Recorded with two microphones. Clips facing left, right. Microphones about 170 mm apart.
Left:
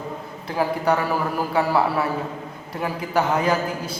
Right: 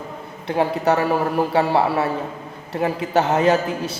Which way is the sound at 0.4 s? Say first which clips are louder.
Right 3 dB; 25° right (ahead or behind).